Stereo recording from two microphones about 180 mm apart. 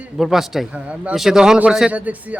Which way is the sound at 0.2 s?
Centre (ahead or behind).